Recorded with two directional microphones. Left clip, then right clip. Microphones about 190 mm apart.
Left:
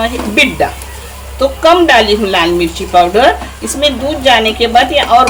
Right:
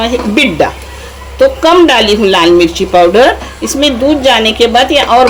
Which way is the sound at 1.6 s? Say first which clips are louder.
Left 2 dB; 30° right (ahead or behind).